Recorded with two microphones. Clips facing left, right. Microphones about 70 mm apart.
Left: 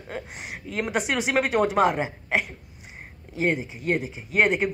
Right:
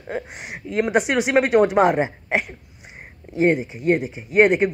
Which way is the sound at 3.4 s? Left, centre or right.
Right.